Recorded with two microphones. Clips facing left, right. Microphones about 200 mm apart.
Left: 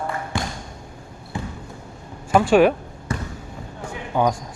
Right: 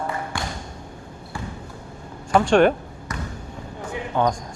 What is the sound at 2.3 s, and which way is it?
Speech, 5° left (ahead or behind).